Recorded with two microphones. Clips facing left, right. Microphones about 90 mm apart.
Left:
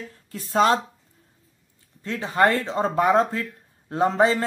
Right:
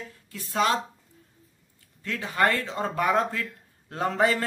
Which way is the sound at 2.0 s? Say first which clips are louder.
Left 4 dB; 30° left (ahead or behind).